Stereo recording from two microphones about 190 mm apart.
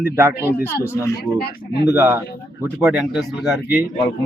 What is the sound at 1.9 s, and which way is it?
Speech, 10° right (ahead or behind).